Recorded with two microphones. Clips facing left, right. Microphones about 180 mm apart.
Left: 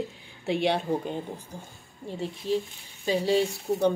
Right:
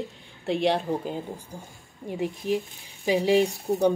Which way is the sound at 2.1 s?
15° right (ahead or behind).